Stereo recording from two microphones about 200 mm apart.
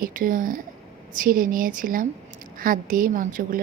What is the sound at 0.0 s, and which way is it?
A woman's voice, 40° right (ahead or behind).